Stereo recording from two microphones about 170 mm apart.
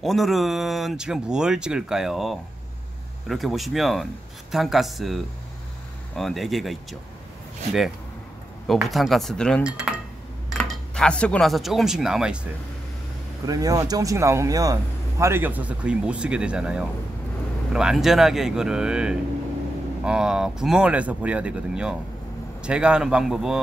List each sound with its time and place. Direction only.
0.0 s speech: centre (ahead or behind)
8.6 s speech: centre (ahead or behind)
13.5 s speech: 20° right (ahead or behind); by 23.6 s 5° right (ahead or behind)